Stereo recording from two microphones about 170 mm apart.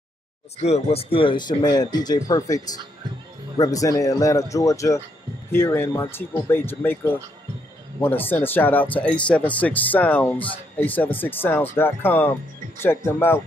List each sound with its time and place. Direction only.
0.6 s speech: 40° left (ahead or behind); by 13.4 s 15° left (ahead or behind)